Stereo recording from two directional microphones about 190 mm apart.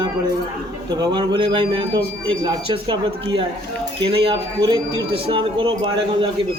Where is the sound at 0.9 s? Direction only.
20° right (ahead or behind).